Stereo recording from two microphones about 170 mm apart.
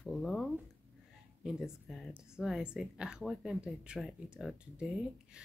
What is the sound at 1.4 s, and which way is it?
Speech, centre (ahead or behind).